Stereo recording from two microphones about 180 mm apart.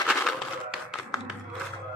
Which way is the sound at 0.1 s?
Centre (ahead or behind).